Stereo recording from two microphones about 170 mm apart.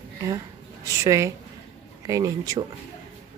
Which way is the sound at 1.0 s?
20° right (ahead or behind).